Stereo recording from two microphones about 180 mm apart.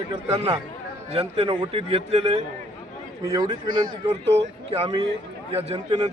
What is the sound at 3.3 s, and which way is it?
Speech, 20° right (ahead or behind).